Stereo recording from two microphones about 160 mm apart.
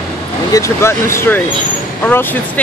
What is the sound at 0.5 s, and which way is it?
Speech, 15° left (ahead or behind).